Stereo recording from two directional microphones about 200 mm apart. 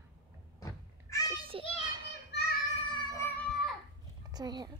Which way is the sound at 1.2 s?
25° right (ahead or behind).